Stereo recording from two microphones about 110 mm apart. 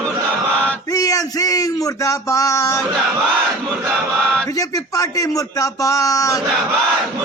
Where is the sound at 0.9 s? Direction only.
35° left (ahead or behind).